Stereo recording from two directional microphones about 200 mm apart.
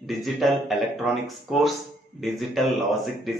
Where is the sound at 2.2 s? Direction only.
Centre (ahead or behind).